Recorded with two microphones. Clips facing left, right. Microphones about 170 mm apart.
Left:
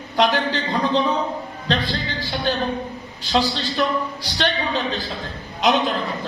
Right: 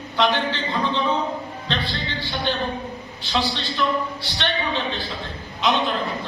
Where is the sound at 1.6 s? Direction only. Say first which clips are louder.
Left 5 dB; 40° left (ahead or behind).